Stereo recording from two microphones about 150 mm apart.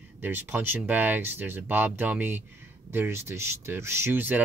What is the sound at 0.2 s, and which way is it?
Speech, 15° right (ahead or behind).